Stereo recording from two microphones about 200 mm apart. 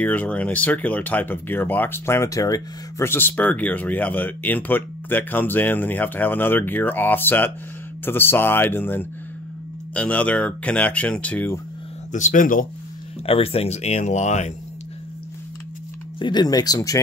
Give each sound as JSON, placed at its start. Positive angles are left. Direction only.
{"t": 0.0, "sound": "speech", "side_deg": 10}
{"t": 12.1, "sound": "speech", "side_deg": 40}
{"t": 13.2, "sound": "speech", "side_deg": 30}
{"t": 16.2, "sound": "speech", "side_deg": 20}